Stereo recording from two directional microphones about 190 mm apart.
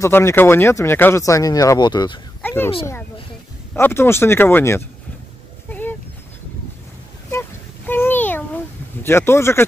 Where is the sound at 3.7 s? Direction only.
15° left (ahead or behind).